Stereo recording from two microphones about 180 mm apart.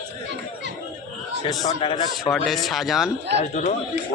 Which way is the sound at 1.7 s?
30° left (ahead or behind).